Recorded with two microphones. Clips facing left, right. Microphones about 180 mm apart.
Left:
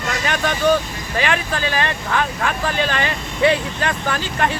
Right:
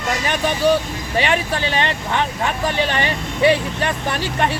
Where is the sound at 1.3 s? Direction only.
20° right (ahead or behind).